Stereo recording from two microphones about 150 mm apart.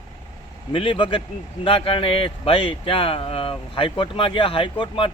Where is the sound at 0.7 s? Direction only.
35° left (ahead or behind).